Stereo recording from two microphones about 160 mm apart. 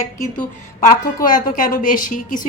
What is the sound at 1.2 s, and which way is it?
A woman's voice, 55° left (ahead or behind).